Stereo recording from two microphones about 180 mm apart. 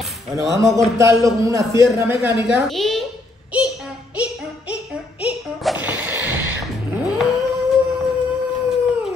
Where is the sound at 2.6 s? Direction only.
Centre (ahead or behind).